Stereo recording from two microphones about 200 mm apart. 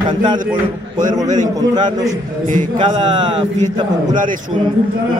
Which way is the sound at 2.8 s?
25° right (ahead or behind).